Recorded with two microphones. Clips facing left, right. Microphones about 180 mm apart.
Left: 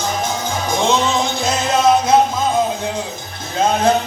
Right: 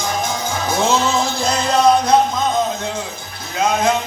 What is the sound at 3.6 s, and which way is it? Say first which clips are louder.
Music: left 2 dB; 30° left (ahead or behind).